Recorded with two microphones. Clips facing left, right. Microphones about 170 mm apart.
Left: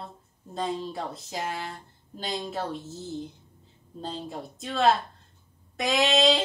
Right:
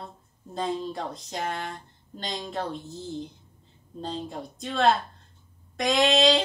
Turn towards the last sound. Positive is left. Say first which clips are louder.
# right 2 dB
turn(degrees=0)  # may be behind; listen again after turning